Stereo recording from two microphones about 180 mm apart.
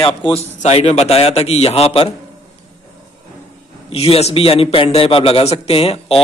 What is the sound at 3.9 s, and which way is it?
A man's voice, 35° left (ahead or behind).